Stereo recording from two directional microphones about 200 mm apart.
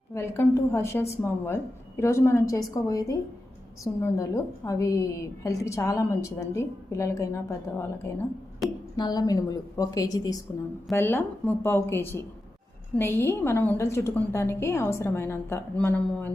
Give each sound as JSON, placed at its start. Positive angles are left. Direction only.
{"t": 0.1, "sound": "a woman's voice", "side_deg": 15}
{"t": 8.6, "sound": "a woman's voice", "side_deg": 0}
{"t": 9.0, "sound": "a woman's voice", "side_deg": 20}